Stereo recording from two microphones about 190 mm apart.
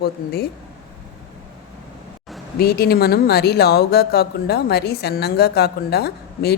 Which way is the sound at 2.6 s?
55° left (ahead or behind).